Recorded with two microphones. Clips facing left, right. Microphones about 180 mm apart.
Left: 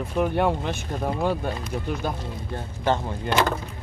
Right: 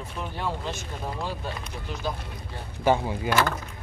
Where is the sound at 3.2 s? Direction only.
20° left (ahead or behind).